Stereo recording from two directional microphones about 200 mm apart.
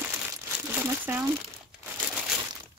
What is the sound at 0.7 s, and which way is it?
Crumpling, 10° right (ahead or behind).